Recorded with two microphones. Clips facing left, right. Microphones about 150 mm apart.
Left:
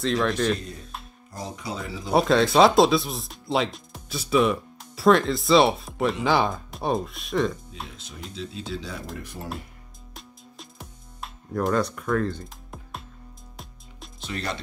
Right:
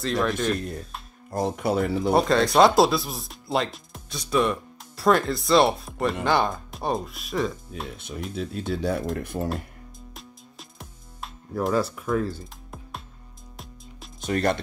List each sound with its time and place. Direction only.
0.0 s speech: centre (ahead or behind)
1.3 s speech: 60° right (ahead or behind)
2.1 s speech: centre (ahead or behind)
8.4 s speech: 55° right (ahead or behind)
10.1 s music: centre (ahead or behind)
14.2 s speech: 50° right (ahead or behind)